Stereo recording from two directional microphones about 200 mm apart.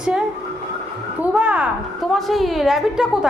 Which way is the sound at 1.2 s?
5° right (ahead or behind).